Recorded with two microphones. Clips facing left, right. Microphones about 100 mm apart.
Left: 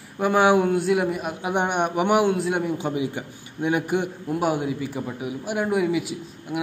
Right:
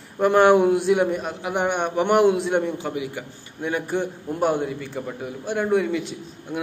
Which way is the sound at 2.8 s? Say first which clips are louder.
Left 2 dB; 20° left (ahead or behind).